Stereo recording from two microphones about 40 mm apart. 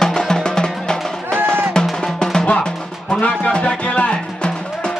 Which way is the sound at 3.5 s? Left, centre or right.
Left.